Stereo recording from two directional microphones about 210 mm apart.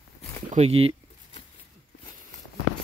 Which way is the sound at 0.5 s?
30° right (ahead or behind).